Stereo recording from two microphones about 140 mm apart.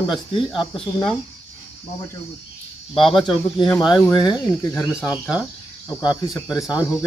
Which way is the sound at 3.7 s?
Centre (ahead or behind).